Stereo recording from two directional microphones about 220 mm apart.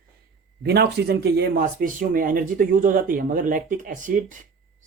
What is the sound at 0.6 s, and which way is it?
Speech, 50° right (ahead or behind).